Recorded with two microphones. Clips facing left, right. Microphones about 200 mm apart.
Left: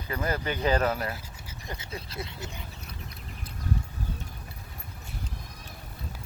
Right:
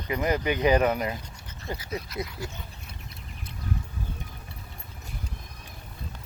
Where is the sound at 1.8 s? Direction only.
30° left (ahead or behind).